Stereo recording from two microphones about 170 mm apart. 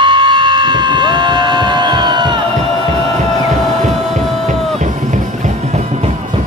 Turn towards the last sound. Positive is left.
turn(degrees=-40)  # may be behind; listen again after turning